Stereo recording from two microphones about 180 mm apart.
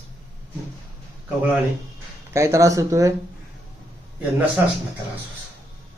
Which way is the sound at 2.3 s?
15° right (ahead or behind).